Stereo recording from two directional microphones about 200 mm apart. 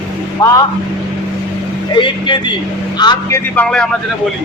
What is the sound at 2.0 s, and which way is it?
Speech, 25° left (ahead or behind).